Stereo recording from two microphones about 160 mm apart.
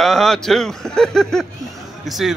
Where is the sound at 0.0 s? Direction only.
Centre (ahead or behind).